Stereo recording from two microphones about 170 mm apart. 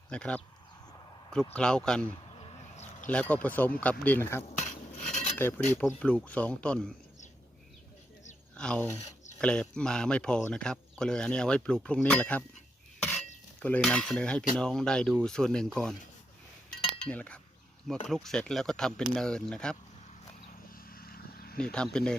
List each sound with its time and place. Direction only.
0.1 s speech: 5° left (ahead or behind)
1.5 s speech: 5° left (ahead or behind)
2.4 s a sound: 30° left (ahead or behind)
3.1 s speech: 5° left (ahead or behind)
4.4 s cutlery: 45° left (ahead or behind)
5.4 s speech: 10° left (ahead or behind)
8.5 s speech: 5° left (ahead or behind)
9.0 s a sound: 40° left (ahead or behind)
9.4 s speech: 5° left (ahead or behind)
13.6 s speech: 10° left (ahead or behind)
17.1 s speech: 10° left (ahead or behind)
20.7 s vehicle: 60° left (ahead or behind)
21.6 s speech: 5° left (ahead or behind)